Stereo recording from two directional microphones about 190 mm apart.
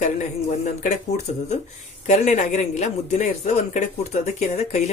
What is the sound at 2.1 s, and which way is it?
A man's voice, 40° left (ahead or behind).